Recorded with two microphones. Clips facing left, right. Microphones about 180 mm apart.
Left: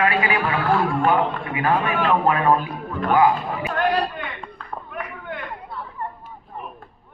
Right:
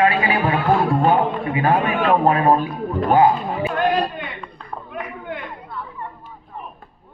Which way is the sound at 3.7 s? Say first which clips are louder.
Right 1 dB; 20° right (ahead or behind).